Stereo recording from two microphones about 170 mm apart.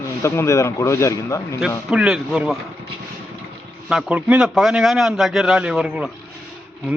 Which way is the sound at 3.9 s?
5° right (ahead or behind).